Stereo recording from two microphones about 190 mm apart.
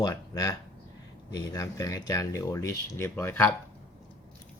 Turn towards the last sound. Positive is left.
turn(degrees=10)  # may be behind; listen again after turning